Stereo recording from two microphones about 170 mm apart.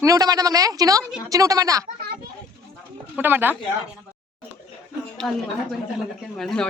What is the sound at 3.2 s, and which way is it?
Speech, 10° right (ahead or behind).